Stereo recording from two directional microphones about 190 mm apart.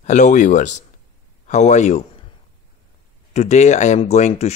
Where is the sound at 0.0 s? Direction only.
40° left (ahead or behind).